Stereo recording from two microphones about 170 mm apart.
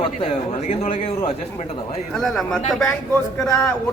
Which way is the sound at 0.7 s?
35° left (ahead or behind).